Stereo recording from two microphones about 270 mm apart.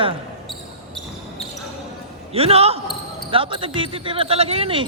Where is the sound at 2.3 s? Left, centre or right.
Right.